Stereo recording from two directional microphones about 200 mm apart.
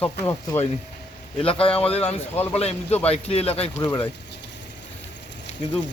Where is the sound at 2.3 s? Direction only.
10° left (ahead or behind).